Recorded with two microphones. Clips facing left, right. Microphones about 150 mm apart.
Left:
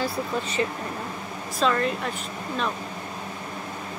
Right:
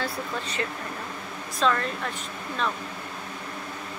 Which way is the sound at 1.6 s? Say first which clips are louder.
Left 1 dB; 5° left (ahead or behind).